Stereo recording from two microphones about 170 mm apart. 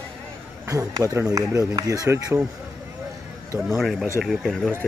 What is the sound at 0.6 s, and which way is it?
Speech, 20° right (ahead or behind).